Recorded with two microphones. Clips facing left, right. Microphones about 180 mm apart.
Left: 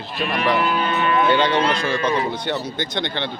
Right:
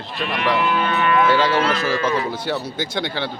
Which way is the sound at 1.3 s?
5° right (ahead or behind).